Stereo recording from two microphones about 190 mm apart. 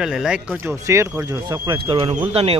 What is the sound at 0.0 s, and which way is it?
Speech, 5° right (ahead or behind).